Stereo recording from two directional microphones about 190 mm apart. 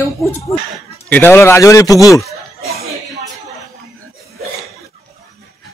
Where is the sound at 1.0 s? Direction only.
10° left (ahead or behind).